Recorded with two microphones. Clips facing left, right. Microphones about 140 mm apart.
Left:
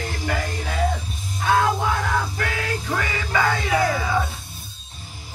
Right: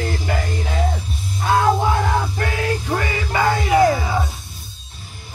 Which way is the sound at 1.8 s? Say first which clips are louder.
Right 4 dB; 30° right (ahead or behind).